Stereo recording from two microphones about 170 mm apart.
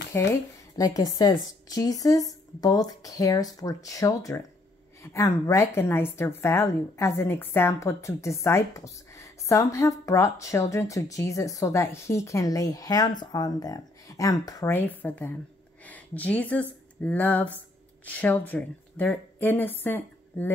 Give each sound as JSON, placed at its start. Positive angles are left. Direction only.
{"t": 0.3, "sound": "a woman's voice", "side_deg": 20}
{"t": 15.8, "sound": "a sound", "side_deg": 10}
{"t": 17.0, "sound": "a woman's voice", "side_deg": 10}